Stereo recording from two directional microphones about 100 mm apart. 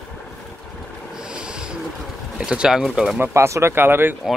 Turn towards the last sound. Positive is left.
turn(degrees=-20)  # may be behind; listen again after turning